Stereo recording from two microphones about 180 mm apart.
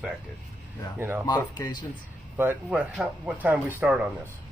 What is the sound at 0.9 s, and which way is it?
Speech, 10° right (ahead or behind).